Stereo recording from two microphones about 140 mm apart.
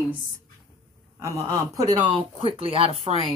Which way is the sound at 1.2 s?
25° right (ahead or behind).